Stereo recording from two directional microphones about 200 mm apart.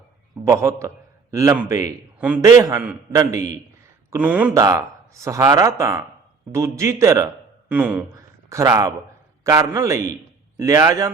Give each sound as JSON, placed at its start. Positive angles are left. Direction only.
{"t": 0.4, "sound": "a man's voice", "side_deg": -15}
{"t": 4.5, "sound": "a man's voice", "side_deg": -15}